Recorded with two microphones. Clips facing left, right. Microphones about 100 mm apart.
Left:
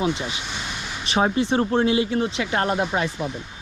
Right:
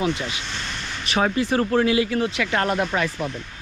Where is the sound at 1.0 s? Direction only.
30° left (ahead or behind).